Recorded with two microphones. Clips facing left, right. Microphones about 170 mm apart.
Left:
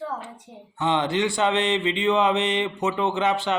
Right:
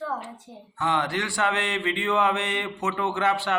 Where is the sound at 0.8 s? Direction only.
20° left (ahead or behind).